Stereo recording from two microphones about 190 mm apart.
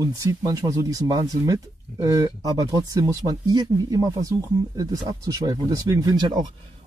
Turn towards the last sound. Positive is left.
turn(degrees=-20)  # may be behind; listen again after turning